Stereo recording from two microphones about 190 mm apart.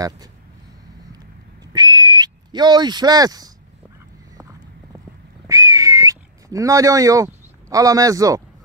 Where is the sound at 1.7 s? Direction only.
20° right (ahead or behind).